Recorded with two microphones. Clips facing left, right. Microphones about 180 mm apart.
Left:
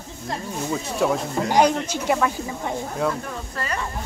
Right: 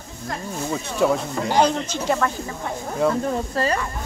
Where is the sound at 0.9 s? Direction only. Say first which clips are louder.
Right 3 dB; centre (ahead or behind).